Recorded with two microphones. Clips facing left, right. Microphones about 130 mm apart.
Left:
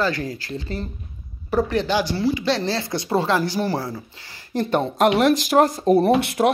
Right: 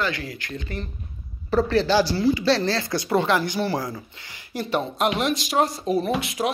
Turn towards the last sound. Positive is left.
turn(degrees=65)  # may be behind; listen again after turning